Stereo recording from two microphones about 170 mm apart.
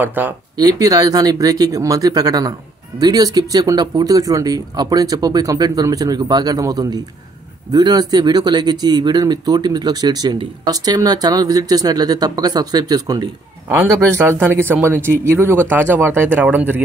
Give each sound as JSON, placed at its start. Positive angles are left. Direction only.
{"t": 0.0, "sound": "speech", "side_deg": -10}
{"t": 0.6, "sound": "speech", "side_deg": -20}